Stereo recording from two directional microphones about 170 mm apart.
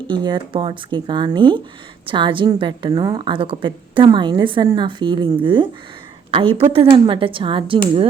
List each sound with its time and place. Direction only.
0.1 s a woman's voice: 25° right (ahead or behind)